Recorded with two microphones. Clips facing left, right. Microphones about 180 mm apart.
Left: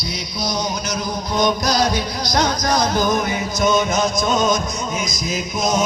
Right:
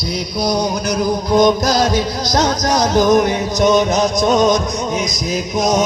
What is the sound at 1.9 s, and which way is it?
Music, 90° right.